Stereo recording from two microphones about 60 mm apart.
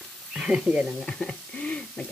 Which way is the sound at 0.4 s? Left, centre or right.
Centre.